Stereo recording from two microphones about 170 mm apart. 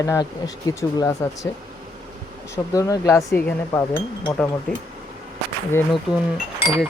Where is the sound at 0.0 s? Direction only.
20° left (ahead or behind).